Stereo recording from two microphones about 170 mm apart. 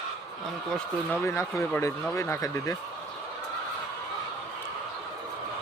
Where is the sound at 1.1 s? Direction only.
15° left (ahead or behind).